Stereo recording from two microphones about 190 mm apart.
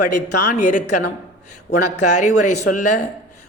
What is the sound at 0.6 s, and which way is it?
Speech, 40° left (ahead or behind).